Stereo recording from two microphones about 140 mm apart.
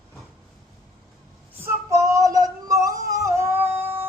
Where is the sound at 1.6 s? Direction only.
20° right (ahead or behind).